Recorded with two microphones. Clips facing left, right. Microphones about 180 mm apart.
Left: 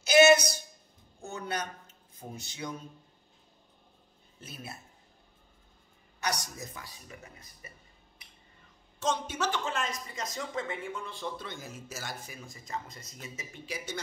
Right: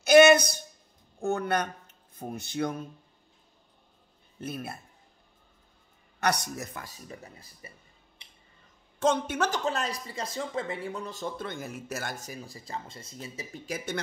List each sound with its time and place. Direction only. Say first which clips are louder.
0.0 s a sound: right 4 dB; 55° right (ahead or behind)
1.2 s speech: right 8 dB; 60° right (ahead or behind)
4.4 s a woman's voice: right 9 dB; 55° right (ahead or behind)
6.2 s a woman's voice: right 6 dB; 65° right (ahead or behind)
6.8 s speech: right 4 dB; 40° right (ahead or behind)
8.2 s a sound: right 1 dB; 25° right (ahead or behind)
9.0 s a woman's voice: right 6 dB; 55° right (ahead or behind)
9.5 s speech: right 3 dB; 35° right (ahead or behind)
13.7 s speech: right 5 dB; 55° right (ahead or behind)